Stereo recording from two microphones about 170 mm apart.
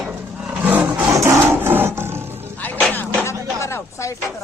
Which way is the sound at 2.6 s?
10° left (ahead or behind).